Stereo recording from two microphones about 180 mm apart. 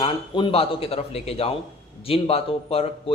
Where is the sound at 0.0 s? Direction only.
30° left (ahead or behind).